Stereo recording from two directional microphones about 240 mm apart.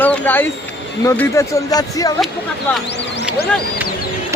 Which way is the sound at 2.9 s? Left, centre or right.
Left.